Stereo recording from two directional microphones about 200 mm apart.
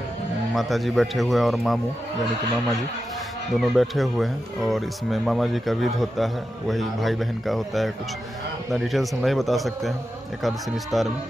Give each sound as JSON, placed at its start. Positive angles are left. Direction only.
{"t": 0.6, "sound": "speech", "side_deg": 0}
{"t": 3.5, "sound": "speech", "side_deg": 0}